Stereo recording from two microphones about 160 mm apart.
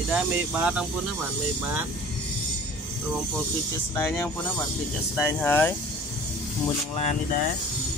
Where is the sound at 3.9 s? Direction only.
15° left (ahead or behind).